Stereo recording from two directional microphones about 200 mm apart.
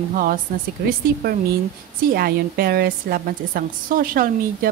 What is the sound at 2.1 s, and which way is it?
A woman's voice, 50° right (ahead or behind).